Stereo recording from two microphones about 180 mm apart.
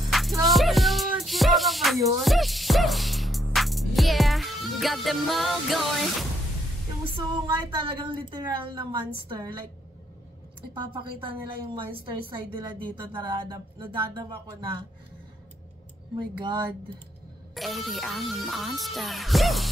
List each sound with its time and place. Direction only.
0.0 s music: centre (ahead or behind)
7.2 s a woman's voice: 30° right (ahead or behind)
10.7 s a woman's voice: 30° right (ahead or behind)
16.2 s a woman's voice: 25° right (ahead or behind)
17.6 s speech: centre (ahead or behind)